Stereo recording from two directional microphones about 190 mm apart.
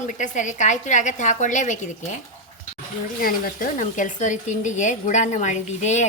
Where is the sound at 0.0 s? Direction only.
40° left (ahead or behind).